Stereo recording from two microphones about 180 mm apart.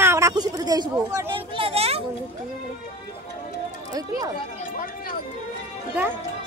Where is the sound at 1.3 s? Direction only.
30° right (ahead or behind).